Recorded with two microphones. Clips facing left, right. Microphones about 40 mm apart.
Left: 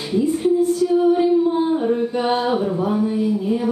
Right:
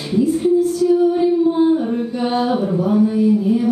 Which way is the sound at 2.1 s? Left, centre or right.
Left.